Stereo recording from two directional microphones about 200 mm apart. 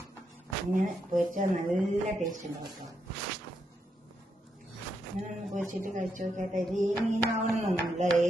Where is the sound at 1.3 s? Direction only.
40° right (ahead or behind).